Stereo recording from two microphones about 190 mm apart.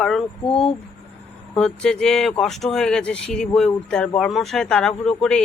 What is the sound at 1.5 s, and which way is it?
Speech, 5° left (ahead or behind).